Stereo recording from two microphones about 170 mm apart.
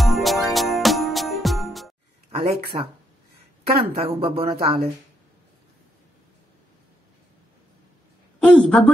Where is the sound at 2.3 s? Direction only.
35° right (ahead or behind).